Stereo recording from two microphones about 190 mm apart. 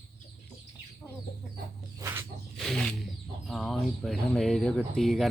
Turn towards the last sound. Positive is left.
turn(degrees=0)  # may be behind; listen again after turning